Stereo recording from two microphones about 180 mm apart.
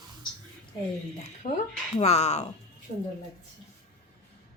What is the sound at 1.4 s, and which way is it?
Speech, 45° left (ahead or behind).